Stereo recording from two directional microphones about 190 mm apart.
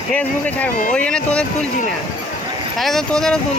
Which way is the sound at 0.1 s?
10° left (ahead or behind).